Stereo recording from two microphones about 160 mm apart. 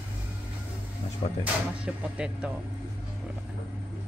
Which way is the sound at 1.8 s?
5° right (ahead or behind).